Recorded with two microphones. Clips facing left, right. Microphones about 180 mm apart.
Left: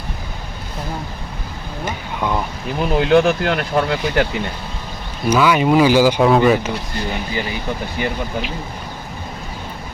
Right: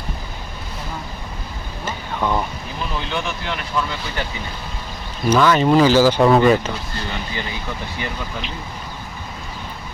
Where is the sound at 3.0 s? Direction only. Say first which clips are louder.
Left 15 dB; 65° left (ahead or behind).